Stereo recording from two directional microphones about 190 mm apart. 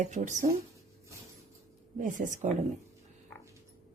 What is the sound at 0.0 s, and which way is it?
Speech, 40° right (ahead or behind).